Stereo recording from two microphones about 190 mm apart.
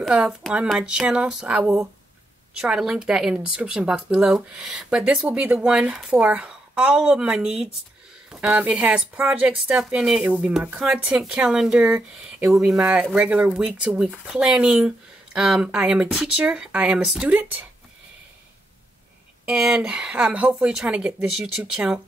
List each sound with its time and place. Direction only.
0.0 s speech: 5° right (ahead or behind)
19.4 s speech: 5° right (ahead or behind)